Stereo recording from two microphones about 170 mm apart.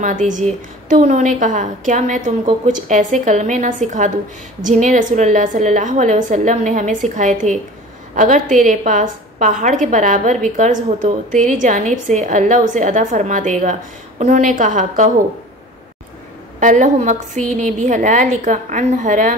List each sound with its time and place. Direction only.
0.0 s a woman's voice: 50° right (ahead or behind)
16.5 s a woman's voice: 50° right (ahead or behind)